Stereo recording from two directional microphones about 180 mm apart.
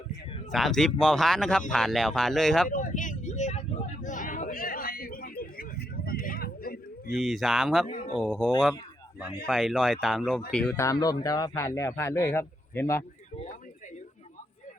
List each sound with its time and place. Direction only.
0.5 s speech: centre (ahead or behind)
2.6 s vehicle: 45° left (ahead or behind)
7.2 s speech: centre (ahead or behind)
7.9 s a sound: 45° left (ahead or behind)
8.2 s speech: 5° left (ahead or behind)
10.8 s a man's voice: 20° left (ahead or behind)